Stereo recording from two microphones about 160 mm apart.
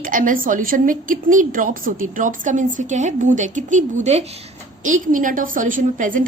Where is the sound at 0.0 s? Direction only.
55° right (ahead or behind).